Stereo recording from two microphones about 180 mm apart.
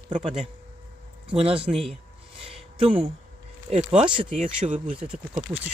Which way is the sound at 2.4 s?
30° right (ahead or behind).